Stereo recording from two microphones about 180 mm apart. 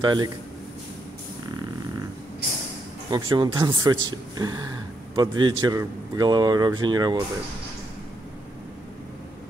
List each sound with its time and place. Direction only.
0.0 s a man's voice: 25° right (ahead or behind)
3.1 s a man's voice: 25° right (ahead or behind)